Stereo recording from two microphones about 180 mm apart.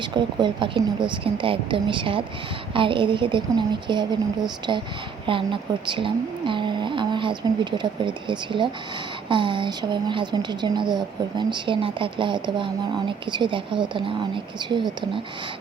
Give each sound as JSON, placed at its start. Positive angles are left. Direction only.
{"t": 0.0, "sound": "a woman's voice", "side_deg": -25}